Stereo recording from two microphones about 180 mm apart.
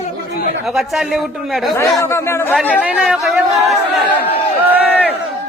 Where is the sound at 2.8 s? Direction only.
5° right (ahead or behind).